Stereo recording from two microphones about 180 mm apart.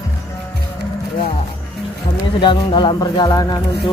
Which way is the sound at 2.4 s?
25° left (ahead or behind).